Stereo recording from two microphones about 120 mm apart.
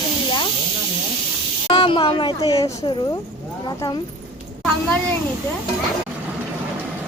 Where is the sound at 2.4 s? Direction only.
30° left (ahead or behind).